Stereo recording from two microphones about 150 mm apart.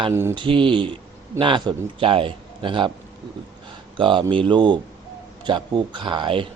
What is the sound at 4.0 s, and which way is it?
A man's voice, 35° right (ahead or behind).